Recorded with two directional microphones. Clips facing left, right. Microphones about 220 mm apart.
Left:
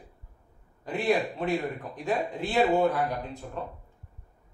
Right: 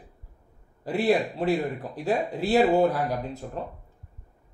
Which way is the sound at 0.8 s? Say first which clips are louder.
Right 3 dB; 35° right (ahead or behind).